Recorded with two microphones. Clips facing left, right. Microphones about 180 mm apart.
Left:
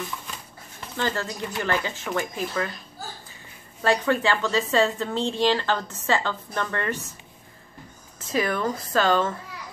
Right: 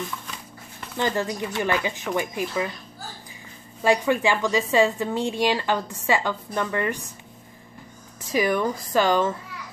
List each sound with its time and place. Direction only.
0.9 s a woman's voice: 15° right (ahead or behind)
3.8 s a woman's voice: 15° right (ahead or behind)
8.3 s a woman's voice: 15° right (ahead or behind)